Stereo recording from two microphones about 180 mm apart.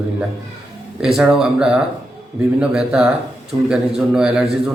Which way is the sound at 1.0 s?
Centre (ahead or behind).